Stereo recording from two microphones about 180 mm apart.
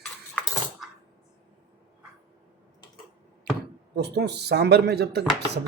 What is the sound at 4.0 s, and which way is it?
Speech, 65° right (ahead or behind).